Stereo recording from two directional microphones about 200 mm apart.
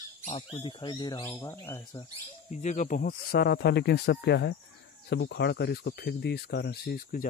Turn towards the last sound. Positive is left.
turn(degrees=50)  # may be behind; listen again after turning